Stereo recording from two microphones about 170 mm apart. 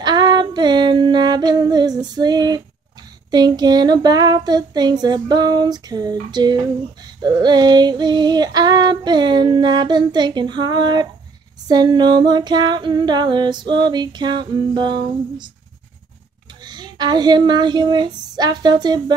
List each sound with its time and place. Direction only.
0.0 s female singing: 25° right (ahead or behind)
16.6 s female singing: 25° right (ahead or behind)